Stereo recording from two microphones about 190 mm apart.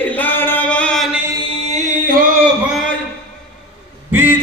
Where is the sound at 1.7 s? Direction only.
40° right (ahead or behind).